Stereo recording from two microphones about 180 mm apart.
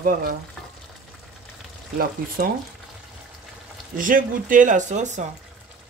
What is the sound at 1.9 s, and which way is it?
Speech, 55° right (ahead or behind).